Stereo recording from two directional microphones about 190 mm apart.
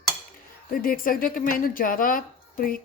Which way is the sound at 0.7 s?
50° left (ahead or behind).